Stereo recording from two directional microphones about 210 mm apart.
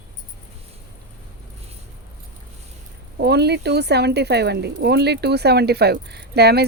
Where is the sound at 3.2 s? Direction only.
50° right (ahead or behind).